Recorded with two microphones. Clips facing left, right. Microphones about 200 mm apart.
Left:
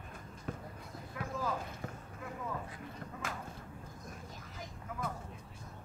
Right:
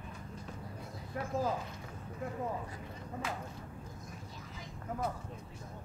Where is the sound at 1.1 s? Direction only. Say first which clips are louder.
Right 4 dB; 45° right (ahead or behind).